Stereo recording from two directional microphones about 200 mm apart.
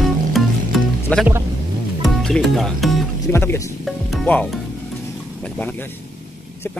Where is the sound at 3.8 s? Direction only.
5° left (ahead or behind).